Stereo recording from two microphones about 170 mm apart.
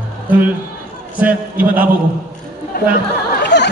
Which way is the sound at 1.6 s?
10° right (ahead or behind).